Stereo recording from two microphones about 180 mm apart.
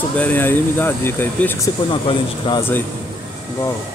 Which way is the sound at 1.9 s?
25° left (ahead or behind).